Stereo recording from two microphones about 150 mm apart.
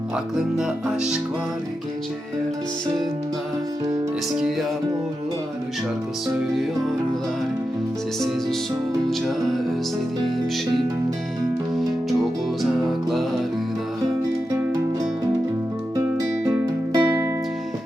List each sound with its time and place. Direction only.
0.3 s music: 5° right (ahead or behind)
9.0 s music: centre (ahead or behind)
16.1 s music: 20° right (ahead or behind)